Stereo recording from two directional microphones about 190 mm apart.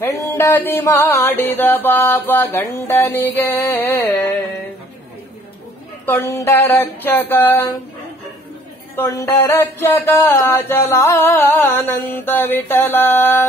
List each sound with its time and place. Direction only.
0.0 s speech: 15° left (ahead or behind)
6.0 s speech: 15° left (ahead or behind)
8.9 s speech: 15° left (ahead or behind)